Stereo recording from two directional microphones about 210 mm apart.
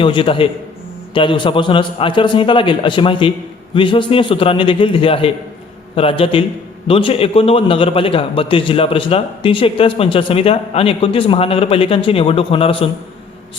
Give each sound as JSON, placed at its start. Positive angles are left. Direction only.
{"t": 0.0, "sound": "a man's voice", "side_deg": 25}